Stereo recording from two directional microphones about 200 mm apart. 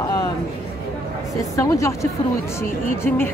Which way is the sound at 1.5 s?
15° left (ahead or behind).